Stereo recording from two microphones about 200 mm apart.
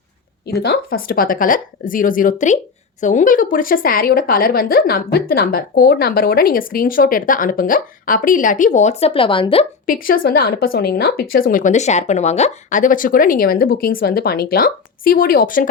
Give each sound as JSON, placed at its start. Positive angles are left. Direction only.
{"t": 0.4, "sound": "speech", "side_deg": 55}
{"t": 9.8, "sound": "speech", "side_deg": 45}